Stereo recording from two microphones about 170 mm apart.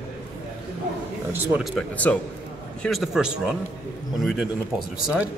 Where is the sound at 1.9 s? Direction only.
10° left (ahead or behind).